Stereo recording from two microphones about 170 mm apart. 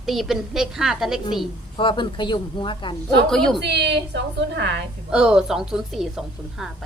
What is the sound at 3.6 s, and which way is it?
A woman's voice, 80° right.